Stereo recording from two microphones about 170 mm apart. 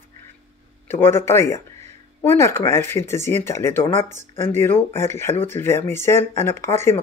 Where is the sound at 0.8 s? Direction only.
15° left (ahead or behind).